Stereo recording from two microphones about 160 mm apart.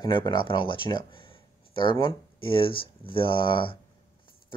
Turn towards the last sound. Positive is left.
turn(degrees=30)  # may be behind; listen again after turning